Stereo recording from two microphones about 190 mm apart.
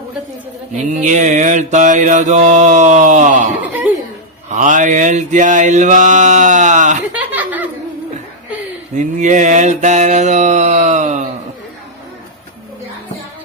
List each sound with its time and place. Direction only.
0.9 s mantra: 40° right (ahead or behind)
4.5 s mantra: 40° right (ahead or behind)
7.2 s chuckle: 10° right (ahead or behind)
9.0 s mantra: 40° right (ahead or behind)